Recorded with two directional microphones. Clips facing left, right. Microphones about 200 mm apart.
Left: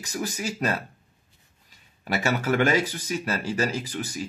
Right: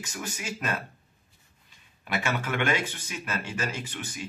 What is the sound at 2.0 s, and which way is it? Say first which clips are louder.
Speech: left 4 dB; 40° left (ahead or behind).